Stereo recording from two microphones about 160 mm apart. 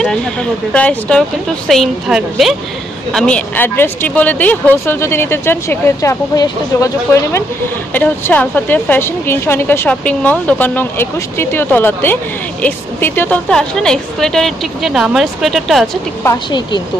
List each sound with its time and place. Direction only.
0.0 s a woman's voice: 5° left (ahead or behind); by 6.9 s 25° left (ahead or behind)
7.9 s a woman's voice: 10° left (ahead or behind)